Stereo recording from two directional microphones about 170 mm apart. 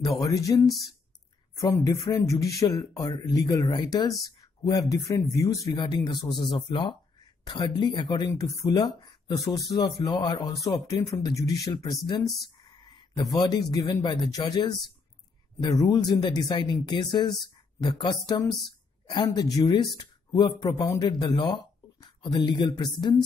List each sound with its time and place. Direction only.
0.0 s speech: 20° left (ahead or behind)
0.7 s speech: centre (ahead or behind)
1.6 s speech: 20° left (ahead or behind)